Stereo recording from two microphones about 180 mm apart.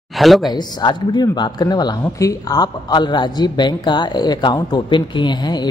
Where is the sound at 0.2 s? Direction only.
Centre (ahead or behind).